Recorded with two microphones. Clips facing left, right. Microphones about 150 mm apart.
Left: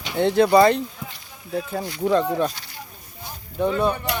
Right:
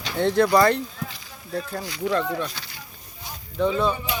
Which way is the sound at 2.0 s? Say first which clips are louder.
Left 5 dB; 35° left (ahead or behind).